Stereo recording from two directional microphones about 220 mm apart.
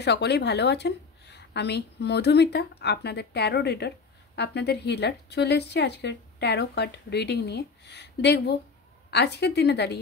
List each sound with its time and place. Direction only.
0.0 s speech: 50° left (ahead or behind)